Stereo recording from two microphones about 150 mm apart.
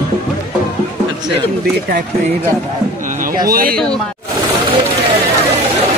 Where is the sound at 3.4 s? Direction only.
80° right.